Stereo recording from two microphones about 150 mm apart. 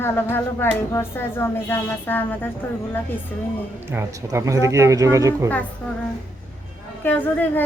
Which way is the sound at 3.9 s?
15° right (ahead or behind).